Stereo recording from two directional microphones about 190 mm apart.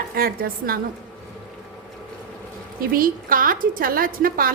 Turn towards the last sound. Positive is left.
turn(degrees=-50)  # may be behind; listen again after turning